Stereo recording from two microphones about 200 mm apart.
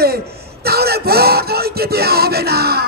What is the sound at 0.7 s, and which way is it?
Music, 50° right (ahead or behind).